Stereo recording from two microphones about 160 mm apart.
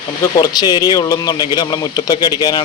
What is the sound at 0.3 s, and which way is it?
Speech, 25° left (ahead or behind).